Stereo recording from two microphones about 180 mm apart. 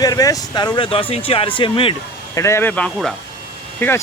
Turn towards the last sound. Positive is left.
turn(degrees=10)  # may be behind; listen again after turning